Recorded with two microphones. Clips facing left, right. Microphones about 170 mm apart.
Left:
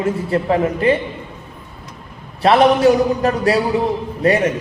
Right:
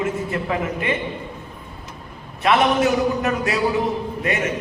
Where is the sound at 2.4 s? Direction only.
35° left (ahead or behind).